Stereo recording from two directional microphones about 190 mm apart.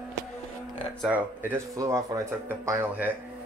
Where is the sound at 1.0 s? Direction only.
10° right (ahead or behind).